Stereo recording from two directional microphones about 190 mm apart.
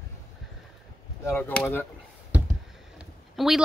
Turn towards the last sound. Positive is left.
turn(degrees=0)  # may be behind; listen again after turning